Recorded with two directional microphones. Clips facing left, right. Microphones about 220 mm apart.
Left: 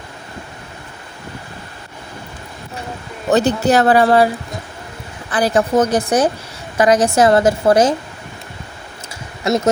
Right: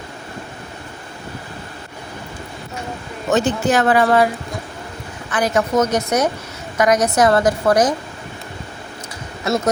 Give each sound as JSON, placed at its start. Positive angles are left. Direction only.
{"t": 3.2, "sound": "speech", "side_deg": 35}
{"t": 5.3, "sound": "a woman's voice", "side_deg": 35}